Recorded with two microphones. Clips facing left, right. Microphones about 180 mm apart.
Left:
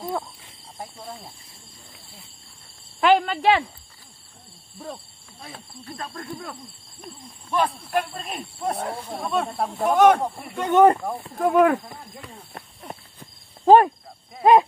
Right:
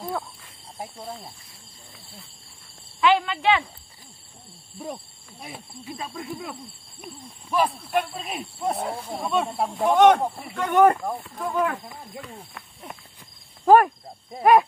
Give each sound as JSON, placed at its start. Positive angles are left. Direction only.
{"t": 0.1, "sound": "wild animals", "side_deg": 25}
{"t": 1.0, "sound": "speech", "side_deg": 0}
{"t": 3.0, "sound": "speech", "side_deg": 45}
{"t": 4.7, "sound": "speech", "side_deg": -10}
{"t": 10.5, "sound": "speech", "side_deg": 20}
{"t": 11.2, "sound": "speech", "side_deg": 45}
{"t": 12.5, "sound": "cricket", "side_deg": 30}
{"t": 14.4, "sound": "speech", "side_deg": 20}